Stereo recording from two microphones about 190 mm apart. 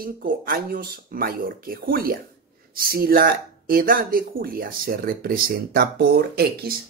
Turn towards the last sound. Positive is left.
turn(degrees=-55)  # may be behind; listen again after turning